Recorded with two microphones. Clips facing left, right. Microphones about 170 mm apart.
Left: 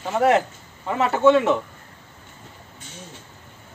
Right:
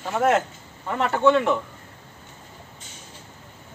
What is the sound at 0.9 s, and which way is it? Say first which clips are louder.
Speech: left 2 dB; 5° left (ahead or behind).